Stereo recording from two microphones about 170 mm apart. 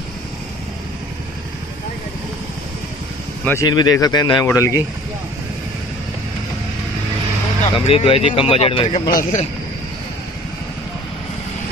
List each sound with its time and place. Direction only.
3.6 s speech: 25° left (ahead or behind)
7.7 s speech: 35° left (ahead or behind)
9.1 s speech: 45° left (ahead or behind)